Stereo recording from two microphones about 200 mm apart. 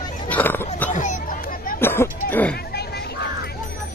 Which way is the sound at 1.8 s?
10° left (ahead or behind).